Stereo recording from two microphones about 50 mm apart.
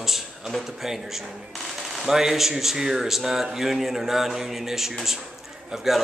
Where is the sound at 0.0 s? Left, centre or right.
Centre.